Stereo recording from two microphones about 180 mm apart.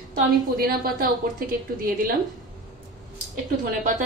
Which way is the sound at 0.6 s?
55° right (ahead or behind).